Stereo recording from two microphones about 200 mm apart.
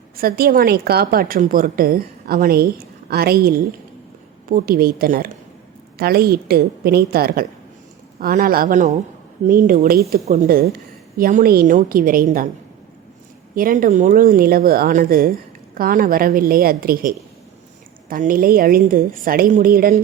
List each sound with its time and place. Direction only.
0.2 s speech: 50° right (ahead or behind)
13.6 s speech: 45° right (ahead or behind)